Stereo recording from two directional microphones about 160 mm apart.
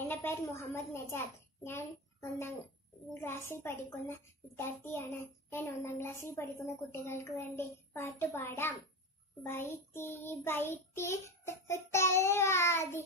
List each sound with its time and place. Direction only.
0.1 s a child's voice: 15° left (ahead or behind)